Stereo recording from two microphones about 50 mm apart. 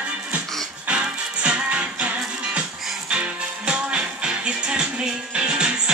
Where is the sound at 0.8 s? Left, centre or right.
Right.